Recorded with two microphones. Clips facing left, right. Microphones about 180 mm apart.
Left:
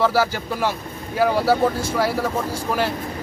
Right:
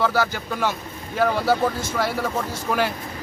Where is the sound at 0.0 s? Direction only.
5° left (ahead or behind).